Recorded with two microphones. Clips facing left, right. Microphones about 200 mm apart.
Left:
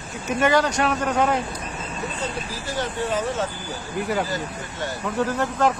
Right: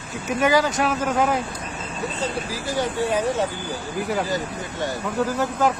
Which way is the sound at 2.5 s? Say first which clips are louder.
Right 3 dB; 10° right (ahead or behind).